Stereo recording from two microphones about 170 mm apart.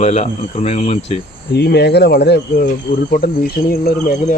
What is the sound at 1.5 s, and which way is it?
Speech, 75° left (ahead or behind).